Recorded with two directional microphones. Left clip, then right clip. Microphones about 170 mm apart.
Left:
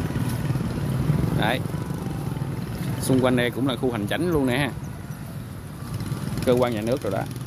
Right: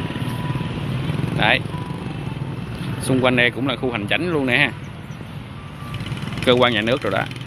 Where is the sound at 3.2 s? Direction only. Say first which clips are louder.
Right 6 dB; 20° left (ahead or behind).